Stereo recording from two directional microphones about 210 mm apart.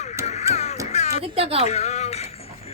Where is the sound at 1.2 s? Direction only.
30° right (ahead or behind).